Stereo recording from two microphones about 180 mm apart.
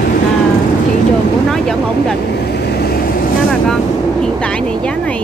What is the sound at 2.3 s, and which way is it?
Vehicle, 65° left (ahead or behind).